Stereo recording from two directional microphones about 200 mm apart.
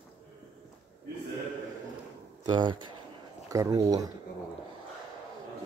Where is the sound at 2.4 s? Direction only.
20° right (ahead or behind).